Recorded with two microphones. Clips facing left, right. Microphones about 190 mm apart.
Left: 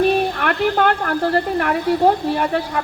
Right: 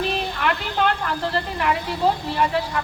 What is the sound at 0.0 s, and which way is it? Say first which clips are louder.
A woman's voice: left 7 dB; 55° left (ahead or behind).